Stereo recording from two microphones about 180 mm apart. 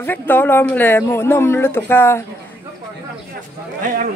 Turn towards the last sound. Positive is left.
turn(degrees=-50)  # may be behind; listen again after turning